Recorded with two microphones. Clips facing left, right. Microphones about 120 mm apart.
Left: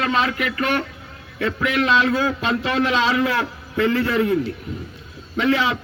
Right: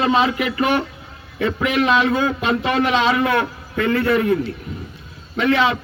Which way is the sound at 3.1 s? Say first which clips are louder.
Right 2 dB; centre (ahead or behind).